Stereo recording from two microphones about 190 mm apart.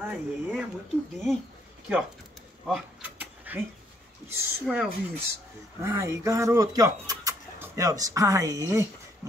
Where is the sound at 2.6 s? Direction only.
5° right (ahead or behind).